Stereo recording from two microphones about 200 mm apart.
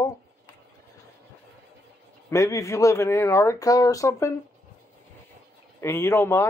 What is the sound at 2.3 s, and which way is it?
Speech, 15° left (ahead or behind).